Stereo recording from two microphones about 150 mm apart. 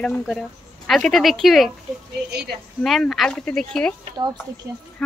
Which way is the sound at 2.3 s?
90° right.